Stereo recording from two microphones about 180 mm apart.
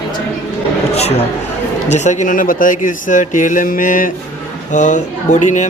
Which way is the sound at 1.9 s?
40° left (ahead or behind).